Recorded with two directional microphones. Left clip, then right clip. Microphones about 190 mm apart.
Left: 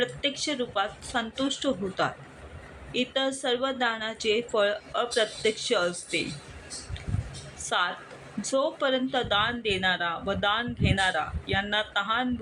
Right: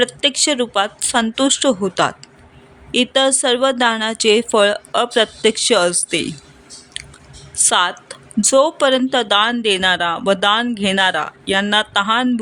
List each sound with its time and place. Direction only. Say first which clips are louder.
0.0 s speech: right 12 dB; 65° right (ahead or behind)
7.6 s speech: right 12 dB; 65° right (ahead or behind)